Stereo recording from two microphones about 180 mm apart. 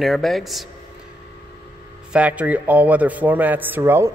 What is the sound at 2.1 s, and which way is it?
Speech, 5° right (ahead or behind).